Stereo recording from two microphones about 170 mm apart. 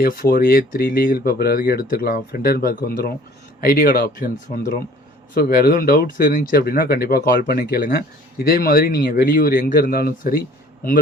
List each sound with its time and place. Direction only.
0.0 s speech: 60° left (ahead or behind)
4.4 s speech: 50° left (ahead or behind)
5.3 s speech: 60° left (ahead or behind)